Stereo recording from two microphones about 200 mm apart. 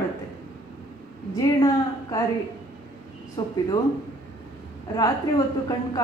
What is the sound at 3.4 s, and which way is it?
Speech, 15° left (ahead or behind).